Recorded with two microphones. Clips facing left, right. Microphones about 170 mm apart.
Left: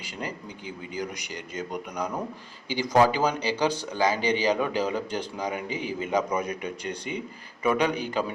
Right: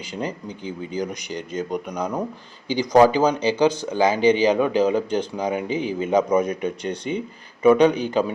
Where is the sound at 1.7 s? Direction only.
20° right (ahead or behind).